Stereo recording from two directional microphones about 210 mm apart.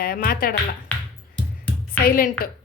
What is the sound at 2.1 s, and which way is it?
Speech, 45° left (ahead or behind).